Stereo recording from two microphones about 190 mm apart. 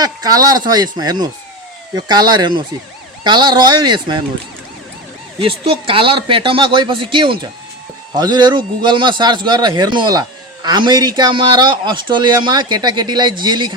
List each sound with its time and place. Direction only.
0.0 s a man's voice: 20° right (ahead or behind)
5.4 s a man's voice: 30° right (ahead or behind)